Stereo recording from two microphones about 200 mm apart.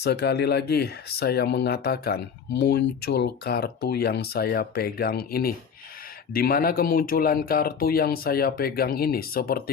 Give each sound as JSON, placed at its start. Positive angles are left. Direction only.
{"t": 0.0, "sound": "speech", "side_deg": 55}